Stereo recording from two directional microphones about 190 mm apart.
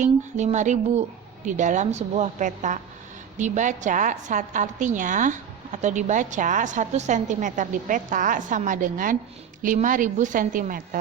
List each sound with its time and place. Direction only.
0.0 s a woman's voice: 40° right (ahead or behind)